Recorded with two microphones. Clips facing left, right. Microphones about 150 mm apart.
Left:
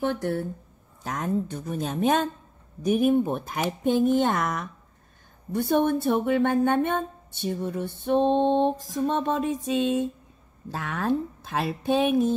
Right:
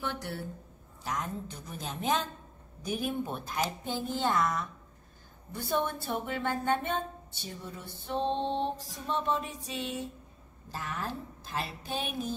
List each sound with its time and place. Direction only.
0.0 s speech: 50° left (ahead or behind); by 8.7 s 70° left (ahead or behind)
8.9 s music: 80° left
10.7 s speech: 70° left (ahead or behind)